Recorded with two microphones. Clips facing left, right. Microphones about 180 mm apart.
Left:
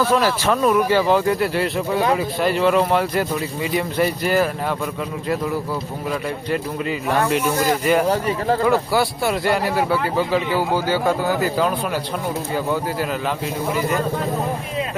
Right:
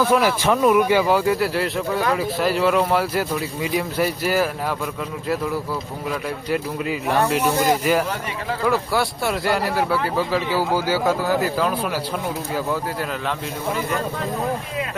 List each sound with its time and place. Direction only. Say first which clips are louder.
0.0 s a man's voice: even; 10° right (ahead or behind)
6.1 s a man's voice: left 1 dB; 5° right (ahead or behind)